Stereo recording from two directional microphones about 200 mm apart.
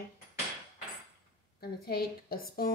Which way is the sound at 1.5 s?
50° left (ahead or behind).